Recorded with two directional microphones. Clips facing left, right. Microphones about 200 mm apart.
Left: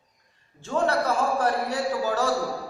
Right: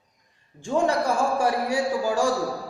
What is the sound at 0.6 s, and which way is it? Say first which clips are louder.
A man's voice: right 2 dB; 15° right (ahead or behind).